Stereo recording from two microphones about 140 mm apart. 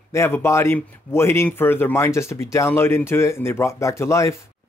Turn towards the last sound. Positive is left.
turn(degrees=20)  # may be behind; listen again after turning